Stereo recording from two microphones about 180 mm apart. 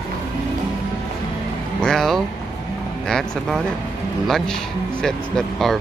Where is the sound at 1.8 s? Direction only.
Centre (ahead or behind).